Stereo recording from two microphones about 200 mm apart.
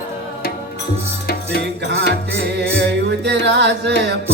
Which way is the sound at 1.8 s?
55° right (ahead or behind).